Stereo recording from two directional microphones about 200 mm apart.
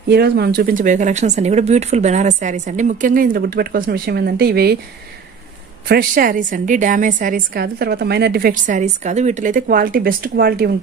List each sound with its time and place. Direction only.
0.1 s speech: 55° right (ahead or behind)
5.9 s a woman's voice: 45° right (ahead or behind)